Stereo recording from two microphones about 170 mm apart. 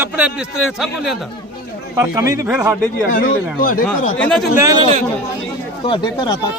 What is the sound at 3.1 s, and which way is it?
Speech, 60° left (ahead or behind).